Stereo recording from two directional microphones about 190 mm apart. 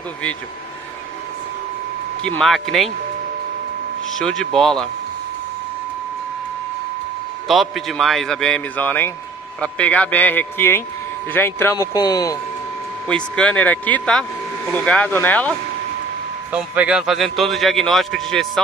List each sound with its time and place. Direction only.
2.2 s a man's voice: 5° left (ahead or behind)
4.1 s a man's voice: centre (ahead or behind)
7.4 s a man's voice: centre (ahead or behind); by 12.4 s 20° left (ahead or behind)
13.1 s a man's voice: 5° left (ahead or behind)
16.5 s a man's voice: 5° right (ahead or behind)